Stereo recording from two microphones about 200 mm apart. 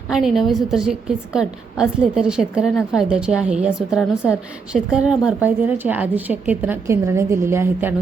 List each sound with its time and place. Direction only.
0.1 s a woman's voice: centre (ahead or behind)